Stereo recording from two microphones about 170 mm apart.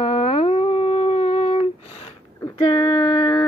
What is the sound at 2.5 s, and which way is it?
Female singing, 25° left (ahead or behind).